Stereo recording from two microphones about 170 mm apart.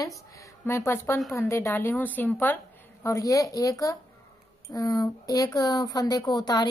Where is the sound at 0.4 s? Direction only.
15° left (ahead or behind).